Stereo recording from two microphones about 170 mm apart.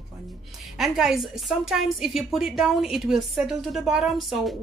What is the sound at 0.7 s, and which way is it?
A woman's voice, centre (ahead or behind).